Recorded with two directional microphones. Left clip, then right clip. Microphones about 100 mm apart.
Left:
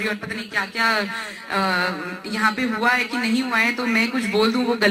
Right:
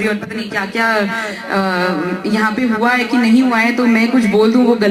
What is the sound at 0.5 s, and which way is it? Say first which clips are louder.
A woman's voice: right 5 dB; 50° left (ahead or behind).